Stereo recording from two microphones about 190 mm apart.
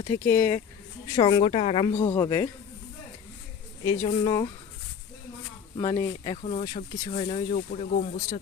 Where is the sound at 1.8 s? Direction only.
20° left (ahead or behind).